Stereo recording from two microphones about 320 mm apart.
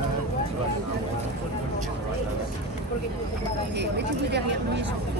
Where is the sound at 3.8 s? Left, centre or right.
Right.